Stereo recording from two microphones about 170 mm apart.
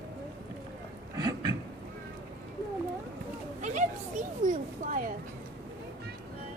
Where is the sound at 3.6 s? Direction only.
45° right (ahead or behind).